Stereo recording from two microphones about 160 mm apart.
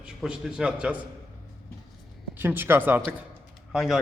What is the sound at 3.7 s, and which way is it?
Speech, centre (ahead or behind).